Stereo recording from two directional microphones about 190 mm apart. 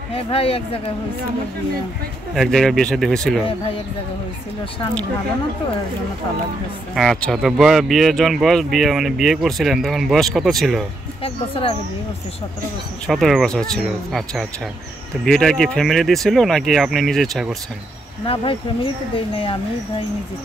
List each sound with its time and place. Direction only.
0.1 s speech: 30° left (ahead or behind)
2.3 s speech: centre (ahead or behind)
7.0 s speech: centre (ahead or behind)
13.0 s speech: centre (ahead or behind)
18.2 s speech: 30° left (ahead or behind)